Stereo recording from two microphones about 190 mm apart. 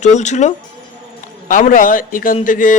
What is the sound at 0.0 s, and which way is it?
A man's voice, 40° left (ahead or behind).